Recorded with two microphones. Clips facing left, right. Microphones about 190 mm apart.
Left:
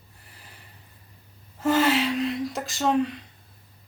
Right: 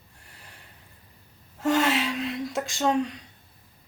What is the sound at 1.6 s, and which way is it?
Speech, centre (ahead or behind).